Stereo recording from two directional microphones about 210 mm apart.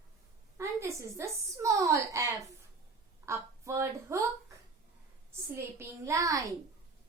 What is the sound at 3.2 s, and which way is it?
Speech, 15° right (ahead or behind).